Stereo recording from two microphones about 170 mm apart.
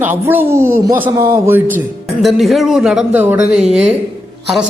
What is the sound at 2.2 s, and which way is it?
A man's voice, centre (ahead or behind).